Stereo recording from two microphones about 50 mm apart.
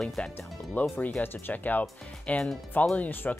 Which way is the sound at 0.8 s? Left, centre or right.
Left.